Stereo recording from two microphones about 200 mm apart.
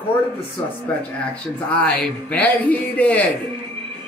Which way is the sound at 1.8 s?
5° left (ahead or behind).